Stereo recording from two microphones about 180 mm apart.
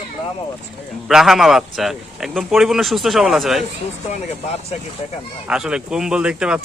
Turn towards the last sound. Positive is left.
turn(degrees=-5)  # may be behind; listen again after turning